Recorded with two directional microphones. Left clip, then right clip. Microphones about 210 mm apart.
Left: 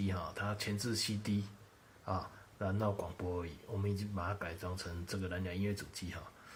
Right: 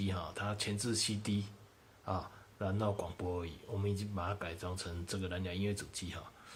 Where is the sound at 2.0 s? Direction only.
Centre (ahead or behind).